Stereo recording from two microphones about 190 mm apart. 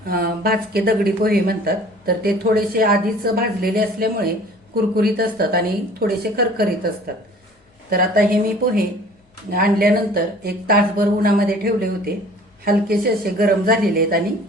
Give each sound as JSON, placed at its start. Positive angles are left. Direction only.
{"t": 0.1, "sound": "speech", "side_deg": -50}
{"t": 7.9, "sound": "speech", "side_deg": -50}